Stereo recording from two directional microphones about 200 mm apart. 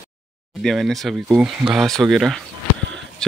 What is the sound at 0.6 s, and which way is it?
Speech, centre (ahead or behind).